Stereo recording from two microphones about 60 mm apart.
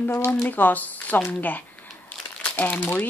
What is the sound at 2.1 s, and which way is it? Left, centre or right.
Crumpling, left.